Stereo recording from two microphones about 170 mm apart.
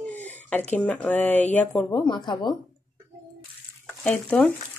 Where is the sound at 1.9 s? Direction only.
20° left (ahead or behind).